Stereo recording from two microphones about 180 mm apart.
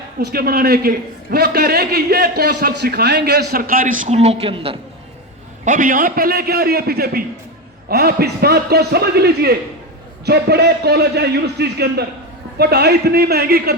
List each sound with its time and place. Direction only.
0.2 s a man's voice: 60° right (ahead or behind); by 4.8 s 30° right (ahead or behind)
5.6 s a man's voice: 45° right (ahead or behind)